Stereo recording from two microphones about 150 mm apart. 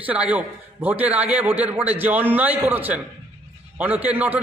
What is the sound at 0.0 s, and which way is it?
A man's voice, 10° right (ahead or behind).